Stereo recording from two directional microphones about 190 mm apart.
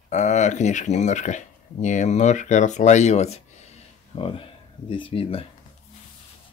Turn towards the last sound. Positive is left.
turn(degrees=30)  # may be behind; listen again after turning